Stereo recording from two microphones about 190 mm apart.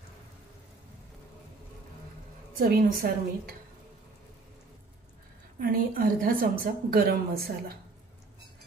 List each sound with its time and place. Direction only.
2.7 s a woman's voice: 50° right (ahead or behind)
5.6 s a woman's voice: 50° right (ahead or behind)